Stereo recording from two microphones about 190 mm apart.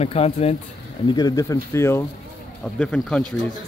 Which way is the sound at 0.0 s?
30° left (ahead or behind).